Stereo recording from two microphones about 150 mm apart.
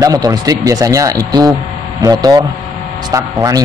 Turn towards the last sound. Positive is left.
turn(degrees=-20)  # may be behind; listen again after turning